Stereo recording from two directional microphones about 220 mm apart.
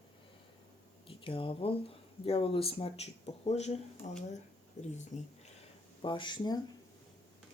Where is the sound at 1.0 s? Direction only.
25° left (ahead or behind).